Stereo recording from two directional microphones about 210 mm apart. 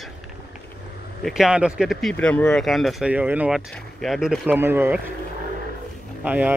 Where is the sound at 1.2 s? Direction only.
Centre (ahead or behind).